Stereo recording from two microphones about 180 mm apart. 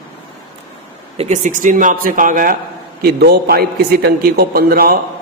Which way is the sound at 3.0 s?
60° right (ahead or behind).